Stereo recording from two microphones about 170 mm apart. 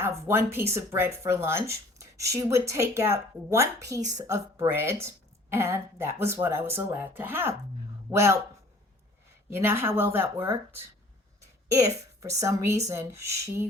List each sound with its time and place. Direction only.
0.0 s speech: 15° right (ahead or behind)
9.5 s speech: 15° right (ahead or behind)